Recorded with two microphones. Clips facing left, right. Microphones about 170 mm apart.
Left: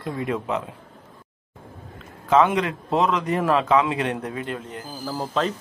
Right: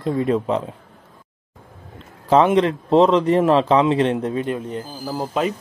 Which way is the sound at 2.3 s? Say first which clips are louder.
Right 4 dB; 30° right (ahead or behind).